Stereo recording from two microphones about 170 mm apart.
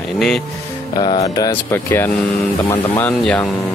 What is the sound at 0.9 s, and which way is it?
Music, 25° left (ahead or behind).